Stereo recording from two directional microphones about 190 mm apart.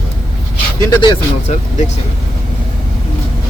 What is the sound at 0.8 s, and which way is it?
Speech, 20° left (ahead or behind).